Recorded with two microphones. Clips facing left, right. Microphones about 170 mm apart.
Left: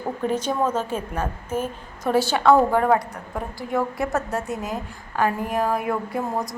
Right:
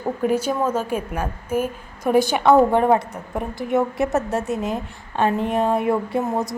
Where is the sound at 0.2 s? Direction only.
10° right (ahead or behind).